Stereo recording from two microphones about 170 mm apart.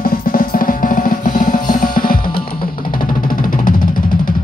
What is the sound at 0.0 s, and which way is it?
Drum, 55° left (ahead or behind).